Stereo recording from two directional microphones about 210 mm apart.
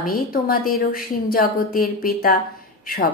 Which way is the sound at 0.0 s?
45° left (ahead or behind).